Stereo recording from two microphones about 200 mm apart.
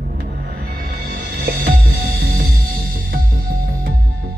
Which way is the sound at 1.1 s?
45° right (ahead or behind).